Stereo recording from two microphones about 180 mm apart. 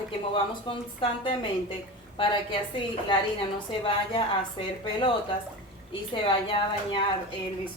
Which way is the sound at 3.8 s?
30° left (ahead or behind).